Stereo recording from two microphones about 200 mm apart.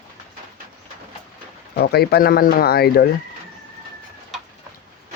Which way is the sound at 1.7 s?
50° left (ahead or behind).